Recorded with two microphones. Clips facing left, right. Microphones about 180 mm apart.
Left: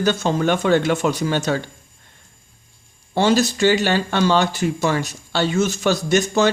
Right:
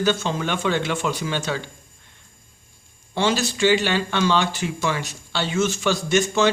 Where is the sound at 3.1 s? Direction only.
40° left (ahead or behind).